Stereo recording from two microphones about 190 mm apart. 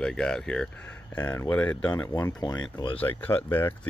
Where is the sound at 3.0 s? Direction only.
10° left (ahead or behind).